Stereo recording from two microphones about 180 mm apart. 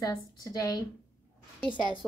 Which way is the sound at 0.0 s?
20° left (ahead or behind).